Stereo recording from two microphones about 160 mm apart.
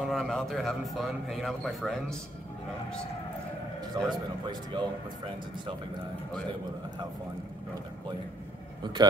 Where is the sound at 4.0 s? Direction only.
30° right (ahead or behind).